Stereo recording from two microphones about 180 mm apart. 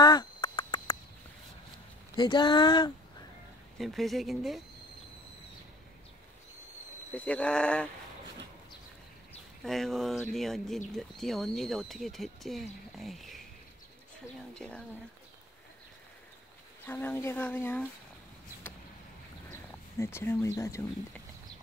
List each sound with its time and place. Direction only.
0.0 s a sound: 25° left (ahead or behind)
2.1 s speech: 25° left (ahead or behind)
3.7 s speech: centre (ahead or behind)
7.2 s speech: 5° left (ahead or behind)
9.6 s speech: centre (ahead or behind)
14.5 s speech: 5° left (ahead or behind)
16.8 s speech: 10° left (ahead or behind)
19.5 s speech: 15° left (ahead or behind)